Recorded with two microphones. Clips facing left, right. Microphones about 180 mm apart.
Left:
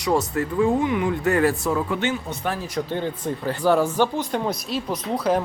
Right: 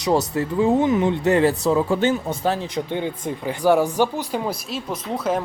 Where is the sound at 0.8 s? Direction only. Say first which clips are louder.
Right 3 dB; 30° right (ahead or behind).